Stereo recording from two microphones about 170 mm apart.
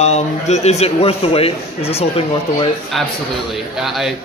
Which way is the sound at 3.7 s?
Centre (ahead or behind).